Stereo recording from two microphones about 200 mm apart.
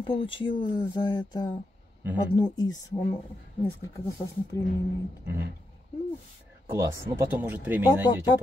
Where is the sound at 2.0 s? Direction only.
10° right (ahead or behind).